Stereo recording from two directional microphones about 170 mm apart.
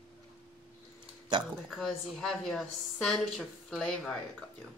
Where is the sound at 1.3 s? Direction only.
25° right (ahead or behind).